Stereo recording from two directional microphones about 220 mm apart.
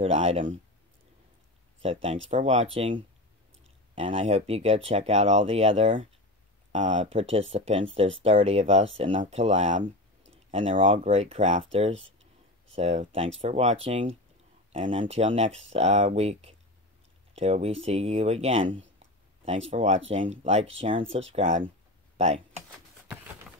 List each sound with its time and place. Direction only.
0.0 s speech: 30° right (ahead or behind)
1.8 s speech: 30° right (ahead or behind)
22.1 s a sound: 30° right (ahead or behind)